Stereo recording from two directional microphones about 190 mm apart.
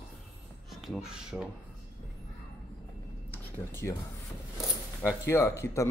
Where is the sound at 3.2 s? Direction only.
10° left (ahead or behind).